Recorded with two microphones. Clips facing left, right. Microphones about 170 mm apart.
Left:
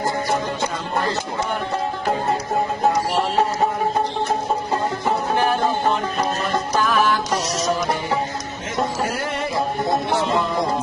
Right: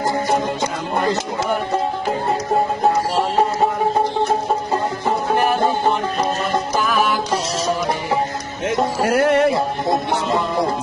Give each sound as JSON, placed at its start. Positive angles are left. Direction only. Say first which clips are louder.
{"t": 8.6, "sound": "music", "louder": "right 5 dB", "side_deg": -65}